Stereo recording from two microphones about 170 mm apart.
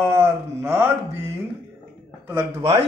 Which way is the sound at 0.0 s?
15° right (ahead or behind).